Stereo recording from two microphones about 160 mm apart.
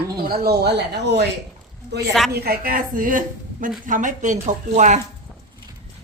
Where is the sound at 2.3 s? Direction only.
70° right (ahead or behind); by 5.0 s 50° right (ahead or behind).